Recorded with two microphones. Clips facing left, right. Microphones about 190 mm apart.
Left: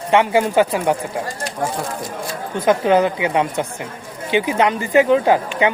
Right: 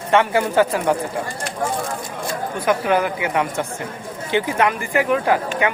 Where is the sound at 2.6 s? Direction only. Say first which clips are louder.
Left 4 dB; 25° left (ahead or behind).